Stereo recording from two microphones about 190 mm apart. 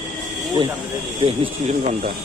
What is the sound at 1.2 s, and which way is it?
Speech, 30° right (ahead or behind).